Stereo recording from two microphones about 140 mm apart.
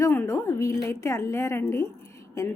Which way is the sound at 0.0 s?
15° left (ahead or behind).